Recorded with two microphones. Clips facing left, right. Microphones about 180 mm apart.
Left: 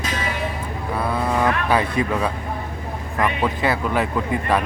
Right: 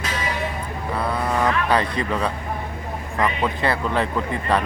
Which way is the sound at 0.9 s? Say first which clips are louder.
Left 1 dB; 5° left (ahead or behind).